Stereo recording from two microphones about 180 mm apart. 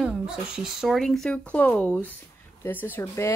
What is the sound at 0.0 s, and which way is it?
Speech, 5° right (ahead or behind).